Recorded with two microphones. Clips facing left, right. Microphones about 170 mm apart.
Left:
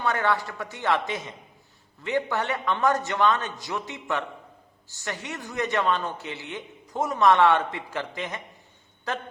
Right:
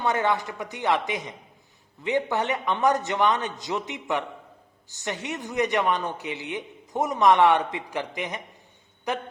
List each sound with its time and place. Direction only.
0.0 s speech: 20° right (ahead or behind)